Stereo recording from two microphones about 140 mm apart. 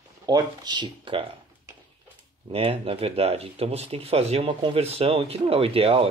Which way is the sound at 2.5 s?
40° right (ahead or behind).